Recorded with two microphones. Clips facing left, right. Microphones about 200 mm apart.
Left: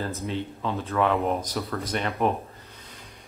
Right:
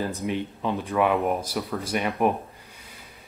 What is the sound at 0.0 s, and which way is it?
Speech, 15° right (ahead or behind).